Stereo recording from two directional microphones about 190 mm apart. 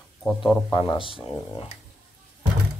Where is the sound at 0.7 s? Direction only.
25° left (ahead or behind).